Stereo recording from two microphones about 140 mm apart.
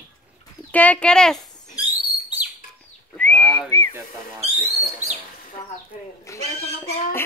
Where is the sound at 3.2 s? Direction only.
15° left (ahead or behind).